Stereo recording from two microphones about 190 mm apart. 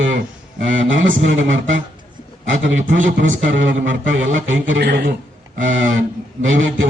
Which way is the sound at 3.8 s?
80° right.